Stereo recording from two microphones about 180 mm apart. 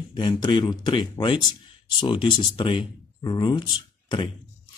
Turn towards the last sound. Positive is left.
turn(degrees=25)  # may be behind; listen again after turning